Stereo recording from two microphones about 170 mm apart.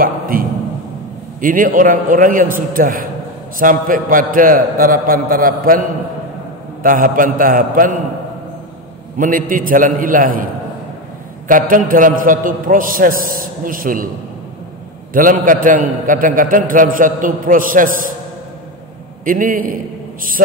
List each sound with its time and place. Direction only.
0.0 s a sound: 55° right (ahead or behind)
1.4 s a man's voice: 55° right (ahead or behind)
9.2 s a man's voice: 55° right (ahead or behind)
11.4 s a man's voice: 55° right (ahead or behind)
15.1 s a man's voice: 55° right (ahead or behind)
19.2 s a man's voice: 55° right (ahead or behind)